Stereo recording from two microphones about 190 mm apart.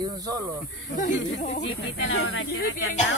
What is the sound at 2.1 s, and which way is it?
Speech, 90° left.